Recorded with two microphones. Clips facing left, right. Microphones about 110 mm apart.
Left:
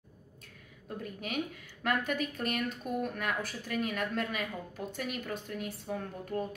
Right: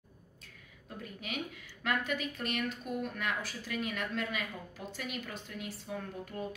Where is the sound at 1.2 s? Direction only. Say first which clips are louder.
Left 4 dB; 45° left (ahead or behind).